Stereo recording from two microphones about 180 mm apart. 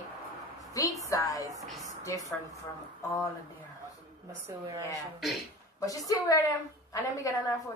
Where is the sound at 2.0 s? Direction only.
20° left (ahead or behind).